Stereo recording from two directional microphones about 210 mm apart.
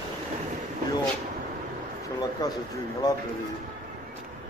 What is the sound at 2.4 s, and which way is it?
Speech, 15° left (ahead or behind).